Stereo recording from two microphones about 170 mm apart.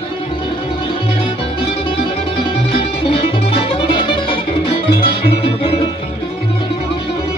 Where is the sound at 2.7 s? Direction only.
30° left (ahead or behind).